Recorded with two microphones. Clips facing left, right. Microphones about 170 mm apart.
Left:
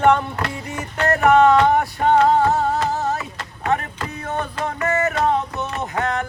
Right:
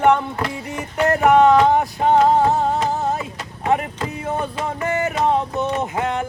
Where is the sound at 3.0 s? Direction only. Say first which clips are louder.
Right 1 dB; 30° right (ahead or behind).